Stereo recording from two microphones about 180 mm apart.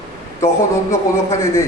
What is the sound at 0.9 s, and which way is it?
Speech, 15° left (ahead or behind).